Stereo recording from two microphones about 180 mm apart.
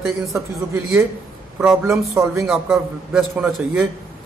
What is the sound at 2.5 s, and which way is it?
A man's voice, 5° right (ahead or behind).